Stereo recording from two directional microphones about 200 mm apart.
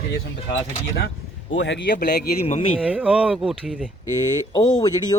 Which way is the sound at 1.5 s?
65° left (ahead or behind).